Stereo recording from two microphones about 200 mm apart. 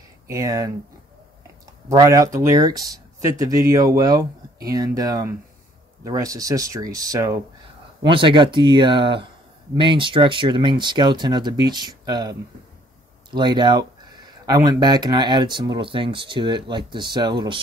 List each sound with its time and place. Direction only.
0.3 s speech: 15° right (ahead or behind)
1.9 s speech: 15° right (ahead or behind)
8.0 s speech: 25° right (ahead or behind)